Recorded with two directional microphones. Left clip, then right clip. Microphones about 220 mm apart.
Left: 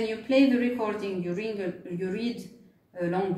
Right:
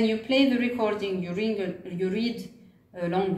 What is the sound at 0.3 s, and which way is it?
Speech, 25° right (ahead or behind).